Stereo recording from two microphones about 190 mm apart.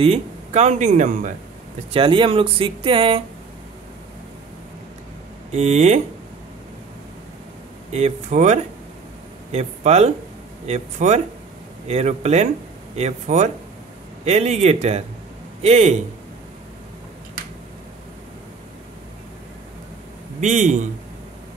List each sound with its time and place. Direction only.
0.0 s speech: 35° right (ahead or behind)
1.9 s speech: 25° right (ahead or behind)
5.5 s speech: 35° right (ahead or behind)
7.9 s speech: 35° right (ahead or behind)
20.3 s speech: 40° right (ahead or behind)